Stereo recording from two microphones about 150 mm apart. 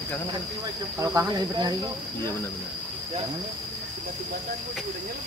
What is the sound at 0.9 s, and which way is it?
Speech, 20° right (ahead or behind).